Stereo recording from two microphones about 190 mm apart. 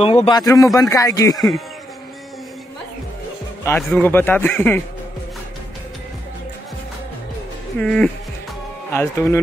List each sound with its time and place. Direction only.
0.0 s speech: 30° left (ahead or behind)
0.4 s a man's voice: 15° left (ahead or behind)
3.6 s a man's voice: 10° left (ahead or behind)
7.8 s a man's voice: 5° left (ahead or behind)